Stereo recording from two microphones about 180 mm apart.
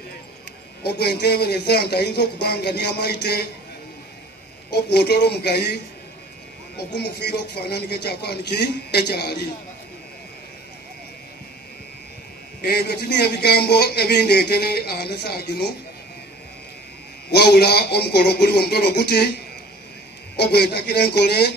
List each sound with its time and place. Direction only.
0.8 s speech: 65° left (ahead or behind)
4.6 s speech: 65° left (ahead or behind)
7.0 s speech: 65° left (ahead or behind)
12.6 s speech: 65° left (ahead or behind)
17.3 s speech: 65° left (ahead or behind)
20.3 s speech: 65° left (ahead or behind)